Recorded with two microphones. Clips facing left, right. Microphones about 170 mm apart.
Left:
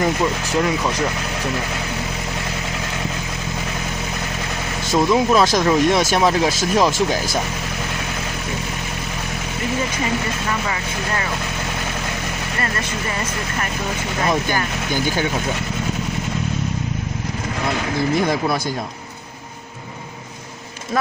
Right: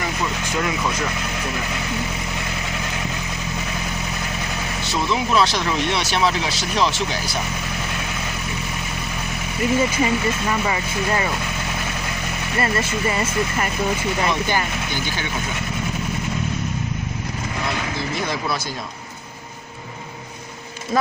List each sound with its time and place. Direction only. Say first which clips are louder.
5.1 s speech: left 3 dB; 45° left (ahead or behind)
18.2 s speech: left 5 dB; 50° left (ahead or behind)